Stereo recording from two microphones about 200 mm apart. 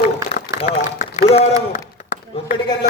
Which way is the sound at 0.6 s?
35° left (ahead or behind).